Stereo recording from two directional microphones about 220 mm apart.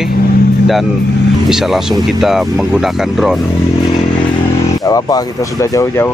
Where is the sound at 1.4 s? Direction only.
Centre (ahead or behind).